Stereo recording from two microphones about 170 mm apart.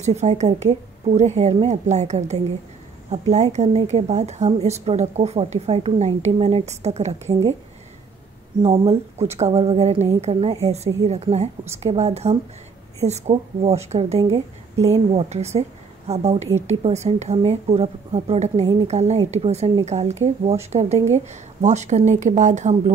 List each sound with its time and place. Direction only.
0.0 s a woman's voice: 40° right (ahead or behind)
8.6 s a woman's voice: 35° right (ahead or behind)